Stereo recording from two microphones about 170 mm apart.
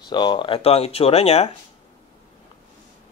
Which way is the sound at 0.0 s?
25° left (ahead or behind).